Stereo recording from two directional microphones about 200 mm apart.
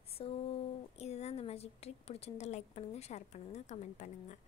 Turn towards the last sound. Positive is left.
turn(degrees=35)  # may be behind; listen again after turning